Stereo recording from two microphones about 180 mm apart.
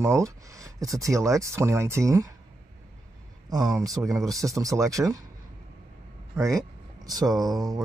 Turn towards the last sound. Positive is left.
turn(degrees=-20)  # may be behind; listen again after turning